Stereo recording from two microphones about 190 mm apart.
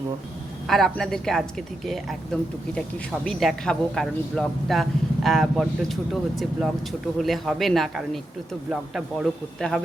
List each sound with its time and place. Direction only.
0.7 s a woman's voice: centre (ahead or behind)
3.2 s a woman's voice: centre (ahead or behind)